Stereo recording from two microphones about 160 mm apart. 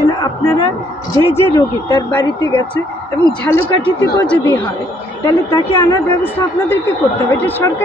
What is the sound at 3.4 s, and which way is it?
Speech, 15° left (ahead or behind).